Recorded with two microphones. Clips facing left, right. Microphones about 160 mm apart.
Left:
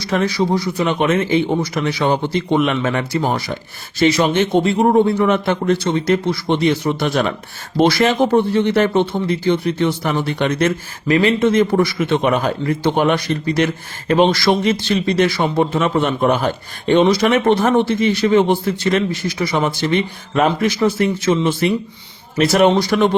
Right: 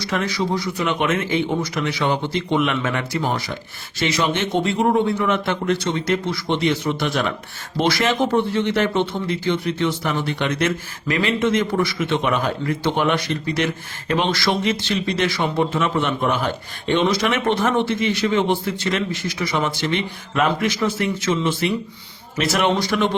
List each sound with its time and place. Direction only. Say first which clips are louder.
0.1 s speech: left 6 dB; 35° left (ahead or behind)